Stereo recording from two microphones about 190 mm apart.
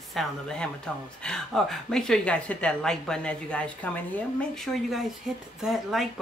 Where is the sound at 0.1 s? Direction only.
Centre (ahead or behind).